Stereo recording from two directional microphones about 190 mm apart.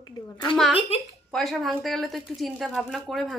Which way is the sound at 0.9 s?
30° left (ahead or behind).